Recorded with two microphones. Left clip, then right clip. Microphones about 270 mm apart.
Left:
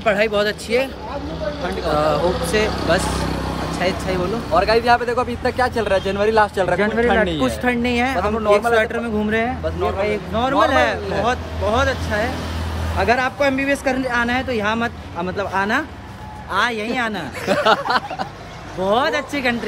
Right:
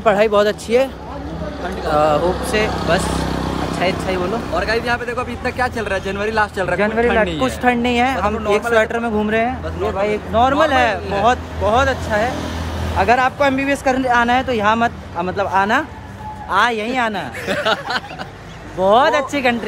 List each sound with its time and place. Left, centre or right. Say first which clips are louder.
0.0 s speech: right 4 dB; centre
2.5 s speech: right 1 dB; centre
3.0 s vehicle: right 1 dB; right
4.6 s speech: left 5 dB; centre
7.6 s speech: right 6 dB; centre
17.5 s speech: left 3 dB; centre
18.8 s speech: right 5 dB; centre